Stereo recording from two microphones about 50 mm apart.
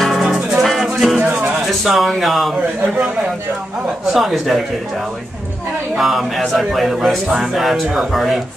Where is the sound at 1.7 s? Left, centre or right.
Centre.